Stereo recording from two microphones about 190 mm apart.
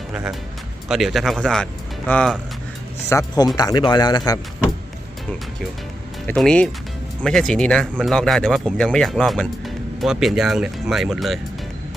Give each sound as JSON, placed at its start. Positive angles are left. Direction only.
{"t": 0.1, "sound": "speech", "side_deg": -5}
{"t": 3.1, "sound": "speech", "side_deg": 20}
{"t": 6.2, "sound": "speech", "side_deg": 5}